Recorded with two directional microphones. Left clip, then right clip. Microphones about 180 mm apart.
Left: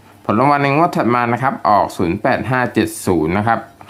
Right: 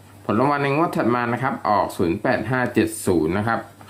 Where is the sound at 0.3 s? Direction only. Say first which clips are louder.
Left 6 dB; 30° left (ahead or behind).